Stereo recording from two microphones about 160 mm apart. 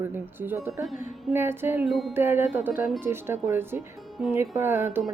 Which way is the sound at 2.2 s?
15° right (ahead or behind).